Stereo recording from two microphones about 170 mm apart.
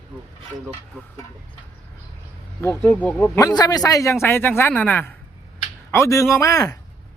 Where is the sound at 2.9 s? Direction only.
10° left (ahead or behind).